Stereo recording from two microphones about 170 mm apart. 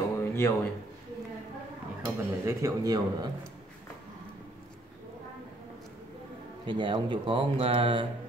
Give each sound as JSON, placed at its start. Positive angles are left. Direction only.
{"t": 0.2, "sound": "a sound", "side_deg": 15}
{"t": 2.0, "sound": "a man's voice", "side_deg": -15}
{"t": 6.6, "sound": "a man's voice", "side_deg": -30}